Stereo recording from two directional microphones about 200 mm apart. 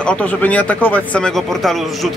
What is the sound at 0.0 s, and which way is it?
Speech, 5° left (ahead or behind).